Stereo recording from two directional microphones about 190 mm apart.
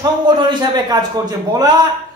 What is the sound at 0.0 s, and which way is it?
A man's voice, 20° right (ahead or behind).